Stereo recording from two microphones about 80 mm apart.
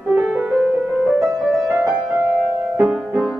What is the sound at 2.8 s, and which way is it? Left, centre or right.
Music, centre.